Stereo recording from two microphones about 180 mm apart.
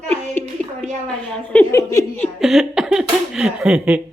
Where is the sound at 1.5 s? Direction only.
15° left (ahead or behind).